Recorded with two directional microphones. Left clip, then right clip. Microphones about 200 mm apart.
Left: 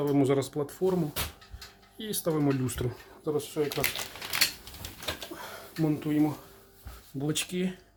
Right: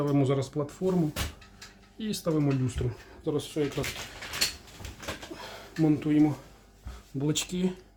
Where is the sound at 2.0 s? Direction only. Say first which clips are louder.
Even; 10° left (ahead or behind).